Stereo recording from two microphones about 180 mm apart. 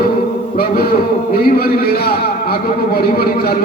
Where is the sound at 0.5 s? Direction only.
55° left (ahead or behind).